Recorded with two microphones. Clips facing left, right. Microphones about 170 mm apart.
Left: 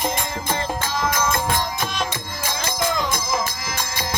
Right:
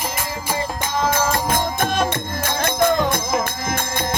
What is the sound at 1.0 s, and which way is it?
Music, 30° right (ahead or behind).